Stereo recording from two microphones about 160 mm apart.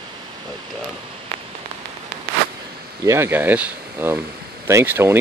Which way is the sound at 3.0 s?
15° right (ahead or behind).